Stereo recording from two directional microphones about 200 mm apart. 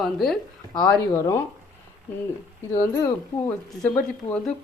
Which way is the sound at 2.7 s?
15° left (ahead or behind).